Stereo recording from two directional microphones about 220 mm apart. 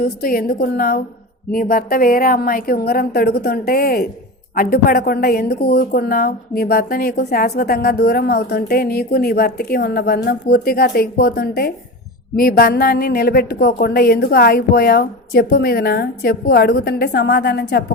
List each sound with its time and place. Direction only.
0.0 s a woman's voice: 45° left (ahead or behind)